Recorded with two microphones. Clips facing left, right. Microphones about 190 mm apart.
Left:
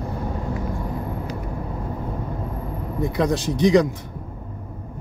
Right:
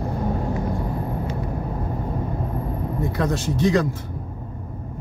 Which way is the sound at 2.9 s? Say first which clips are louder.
Left 4 dB; 15° left (ahead or behind).